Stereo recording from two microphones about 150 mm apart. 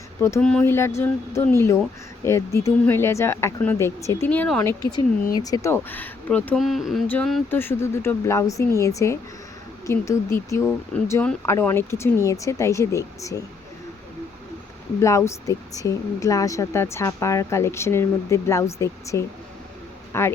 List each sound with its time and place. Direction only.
0.2 s speech: 15° left (ahead or behind)
4.3 s speech: 5° left (ahead or behind)
4.6 s speech: 25° left (ahead or behind)
15.0 s speech: 20° left (ahead or behind)